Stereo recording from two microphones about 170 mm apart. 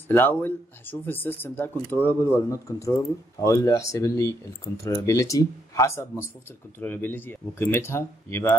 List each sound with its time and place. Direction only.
0.1 s speech: 10° left (ahead or behind)